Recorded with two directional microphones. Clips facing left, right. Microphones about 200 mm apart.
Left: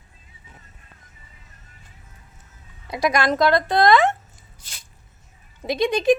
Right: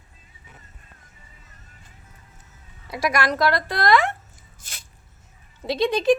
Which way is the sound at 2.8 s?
20° left (ahead or behind).